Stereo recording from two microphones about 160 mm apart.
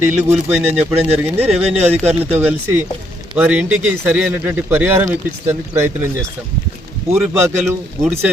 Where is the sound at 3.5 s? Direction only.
10° right (ahead or behind).